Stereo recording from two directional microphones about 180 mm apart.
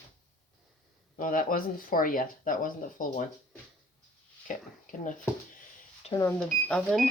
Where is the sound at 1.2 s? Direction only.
50° left (ahead or behind).